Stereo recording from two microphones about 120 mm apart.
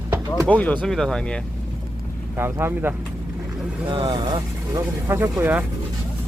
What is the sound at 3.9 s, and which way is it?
Speech, 40° right (ahead or behind).